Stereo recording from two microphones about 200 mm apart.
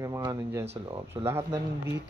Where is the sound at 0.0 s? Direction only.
15° right (ahead or behind).